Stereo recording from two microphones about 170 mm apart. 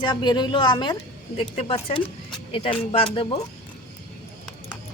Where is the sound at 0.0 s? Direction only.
25° left (ahead or behind).